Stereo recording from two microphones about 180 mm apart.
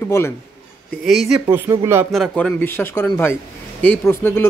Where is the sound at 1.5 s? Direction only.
15° right (ahead or behind).